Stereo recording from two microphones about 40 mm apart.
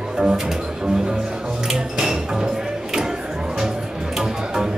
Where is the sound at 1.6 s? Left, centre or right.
Centre.